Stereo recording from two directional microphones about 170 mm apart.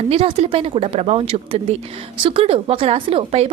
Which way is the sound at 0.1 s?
35° right (ahead or behind).